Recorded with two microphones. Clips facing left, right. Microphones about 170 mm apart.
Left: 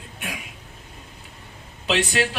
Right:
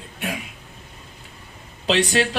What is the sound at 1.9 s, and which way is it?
Speech, 35° right (ahead or behind).